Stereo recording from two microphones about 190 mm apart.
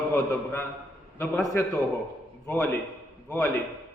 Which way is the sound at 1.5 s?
15° left (ahead or behind).